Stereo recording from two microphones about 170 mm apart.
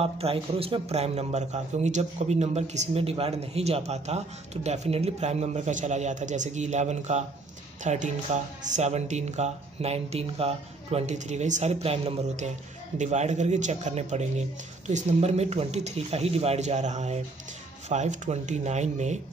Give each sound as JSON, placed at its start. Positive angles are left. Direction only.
{"t": 0.0, "sound": "a man's voice", "side_deg": -35}